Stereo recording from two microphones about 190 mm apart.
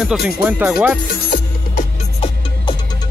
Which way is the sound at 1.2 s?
50° left (ahead or behind).